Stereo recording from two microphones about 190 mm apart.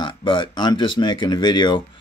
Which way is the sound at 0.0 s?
25° left (ahead or behind).